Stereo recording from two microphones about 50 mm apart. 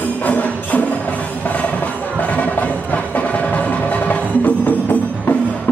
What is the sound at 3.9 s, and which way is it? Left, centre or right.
Wood block, left.